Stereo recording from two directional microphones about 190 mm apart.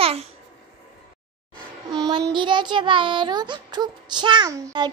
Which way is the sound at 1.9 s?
20° right (ahead or behind).